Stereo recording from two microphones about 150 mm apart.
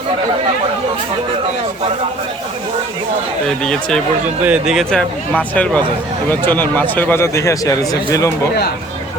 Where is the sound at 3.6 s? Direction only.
5° left (ahead or behind); by 7.9 s 25° left (ahead or behind).